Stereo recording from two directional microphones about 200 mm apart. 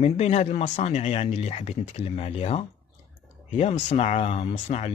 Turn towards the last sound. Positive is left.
turn(degrees=30)  # may be behind; listen again after turning